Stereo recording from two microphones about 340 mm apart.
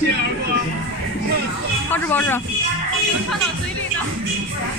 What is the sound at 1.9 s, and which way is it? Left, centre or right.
Speech, centre.